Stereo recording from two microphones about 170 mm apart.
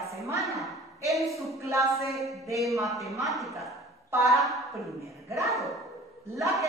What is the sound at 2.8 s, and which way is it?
A woman's voice, centre (ahead or behind).